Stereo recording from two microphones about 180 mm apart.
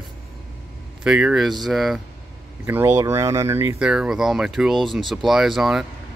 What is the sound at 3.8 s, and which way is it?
Speech, 5° right (ahead or behind).